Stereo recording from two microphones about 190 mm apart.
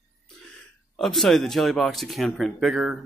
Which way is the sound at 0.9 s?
Centre (ahead or behind).